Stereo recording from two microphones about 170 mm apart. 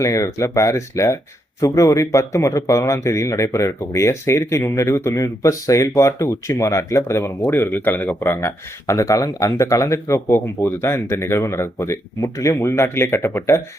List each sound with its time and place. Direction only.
0.0 s speech: 20° left (ahead or behind)